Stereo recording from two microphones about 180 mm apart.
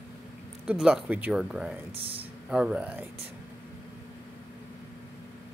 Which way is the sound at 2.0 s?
30° right (ahead or behind).